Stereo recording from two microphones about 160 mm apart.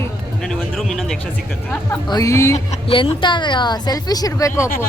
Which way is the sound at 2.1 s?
20° left (ahead or behind).